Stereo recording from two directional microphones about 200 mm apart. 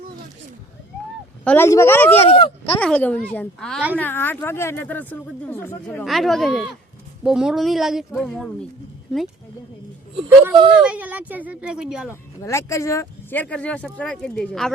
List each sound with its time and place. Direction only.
1.5 s speech: 10° left (ahead or behind)
2.2 s speech: 25° left (ahead or behind)
2.7 s speech: 5° left (ahead or behind)
10.2 s speech: 10° right (ahead or behind)
12.4 s speech: 15° left (ahead or behind)